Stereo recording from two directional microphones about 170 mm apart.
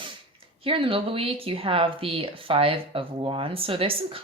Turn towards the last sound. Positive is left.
turn(degrees=-35)  # may be behind; listen again after turning